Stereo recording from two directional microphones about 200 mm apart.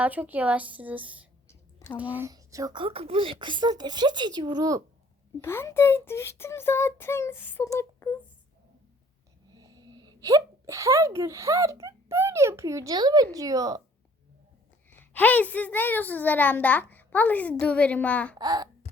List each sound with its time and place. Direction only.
0.0 s a woman's voice: 10° right (ahead or behind)
1.5 s a sound: 15° left (ahead or behind)
2.0 s speech: 10° right (ahead or behind)
5.4 s a woman's voice: 10° left (ahead or behind)
7.8 s a sound: 15° left (ahead or behind)
9.6 s a woman's voice: 20° right (ahead or behind)
14.8 s a woman's voice: 10° left (ahead or behind)
18.3 s speech: 20° right (ahead or behind)